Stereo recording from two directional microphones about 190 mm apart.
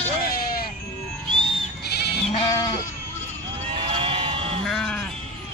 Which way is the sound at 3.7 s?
30° right (ahead or behind).